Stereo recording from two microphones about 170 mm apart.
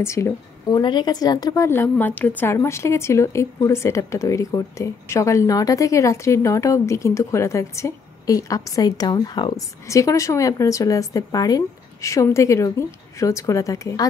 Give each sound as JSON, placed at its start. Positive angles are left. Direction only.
{"t": 0.0, "sound": "a woman's voice", "side_deg": 15}